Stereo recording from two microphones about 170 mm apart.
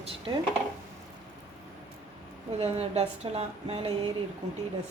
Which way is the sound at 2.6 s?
40° right (ahead or behind).